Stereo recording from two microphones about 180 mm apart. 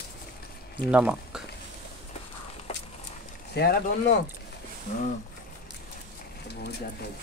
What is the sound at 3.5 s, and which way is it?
Speech, 65° left (ahead or behind).